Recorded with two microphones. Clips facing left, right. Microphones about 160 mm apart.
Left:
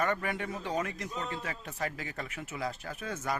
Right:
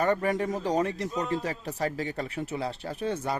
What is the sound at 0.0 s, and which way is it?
Speech, 35° right (ahead or behind).